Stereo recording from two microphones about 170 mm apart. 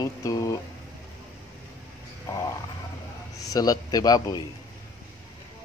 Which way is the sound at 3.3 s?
20° left (ahead or behind).